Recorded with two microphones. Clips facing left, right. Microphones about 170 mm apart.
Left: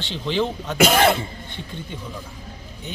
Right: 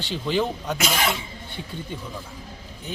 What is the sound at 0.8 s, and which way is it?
Speech, 55° left (ahead or behind).